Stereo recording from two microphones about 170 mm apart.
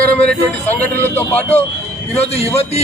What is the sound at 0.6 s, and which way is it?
Speech, 10° left (ahead or behind).